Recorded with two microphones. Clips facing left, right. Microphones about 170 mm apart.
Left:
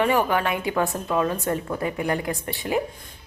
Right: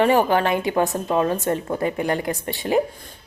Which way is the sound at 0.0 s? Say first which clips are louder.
Right 4 dB; 30° right (ahead or behind).